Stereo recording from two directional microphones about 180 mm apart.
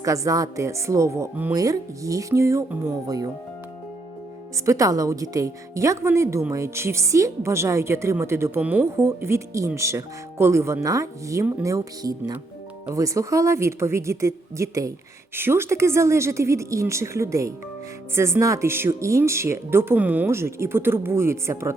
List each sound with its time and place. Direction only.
0.0 s speech: 20° right (ahead or behind)
4.5 s speech: 15° right (ahead or behind)